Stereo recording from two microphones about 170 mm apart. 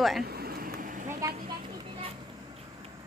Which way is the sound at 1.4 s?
25° right (ahead or behind).